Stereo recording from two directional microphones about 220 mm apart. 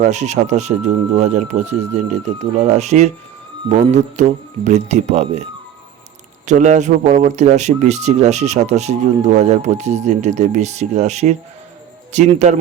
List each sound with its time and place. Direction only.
0.0 s speech: 30° right (ahead or behind)